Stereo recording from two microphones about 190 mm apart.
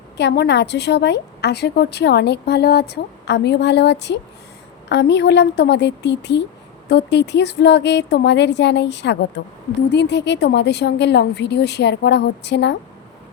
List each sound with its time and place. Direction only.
0.2 s a woman's voice: 60° left (ahead or behind)